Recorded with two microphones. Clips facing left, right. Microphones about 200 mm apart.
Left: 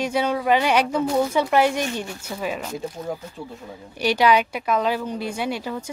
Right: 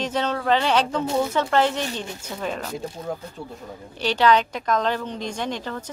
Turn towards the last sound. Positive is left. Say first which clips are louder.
# left 2 dB
turn(degrees=10)  # may be behind; listen again after turning